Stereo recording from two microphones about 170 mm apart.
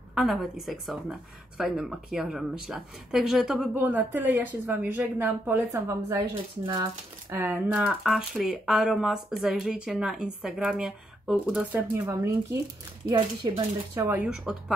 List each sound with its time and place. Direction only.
0.1 s a woman's voice: centre (ahead or behind); by 6.9 s 30° right (ahead or behind)
7.2 s speech: 15° right (ahead or behind); by 11.6 s centre (ahead or behind)
11.7 s a woman's voice: 15° right (ahead or behind)
13.1 s speech: 25° right (ahead or behind)
13.9 s a woman's voice: 10° right (ahead or behind)